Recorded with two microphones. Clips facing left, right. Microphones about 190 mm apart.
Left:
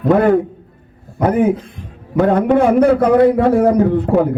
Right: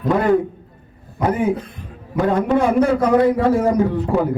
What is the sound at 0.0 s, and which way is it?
A man's voice, 60° left (ahead or behind).